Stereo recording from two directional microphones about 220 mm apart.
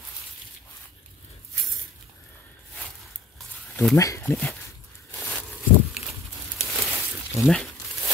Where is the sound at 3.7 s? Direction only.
10° left (ahead or behind).